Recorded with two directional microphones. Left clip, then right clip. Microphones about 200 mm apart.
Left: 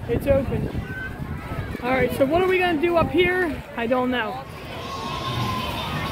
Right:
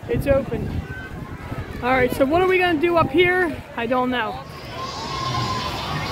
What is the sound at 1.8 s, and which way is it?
Speech, 20° right (ahead or behind).